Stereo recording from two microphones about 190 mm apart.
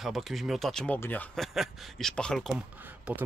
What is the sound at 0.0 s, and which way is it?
Speech, centre (ahead or behind).